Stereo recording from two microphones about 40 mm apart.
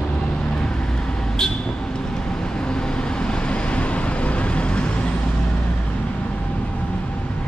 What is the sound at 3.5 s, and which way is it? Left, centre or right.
Vehicle, left.